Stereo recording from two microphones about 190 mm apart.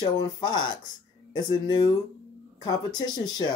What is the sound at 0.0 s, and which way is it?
Speech, 20° left (ahead or behind).